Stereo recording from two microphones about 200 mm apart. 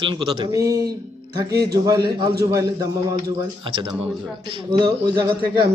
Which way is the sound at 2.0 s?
50° right (ahead or behind).